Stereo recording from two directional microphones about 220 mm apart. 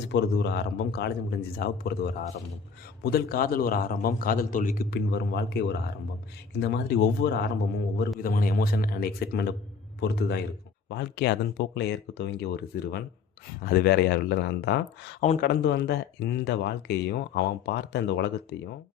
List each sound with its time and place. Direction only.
0.1 s a man's voice: 50° left (ahead or behind)
15.2 s speech: 35° left (ahead or behind)